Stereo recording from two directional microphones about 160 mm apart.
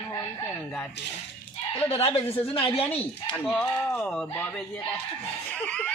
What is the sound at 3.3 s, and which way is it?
Speech, 5° left (ahead or behind).